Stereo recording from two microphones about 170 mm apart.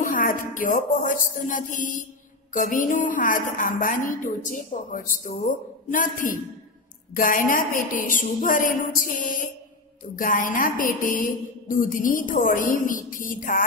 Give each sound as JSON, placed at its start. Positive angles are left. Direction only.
{"t": 0.0, "sound": "a woman's voice", "side_deg": 55}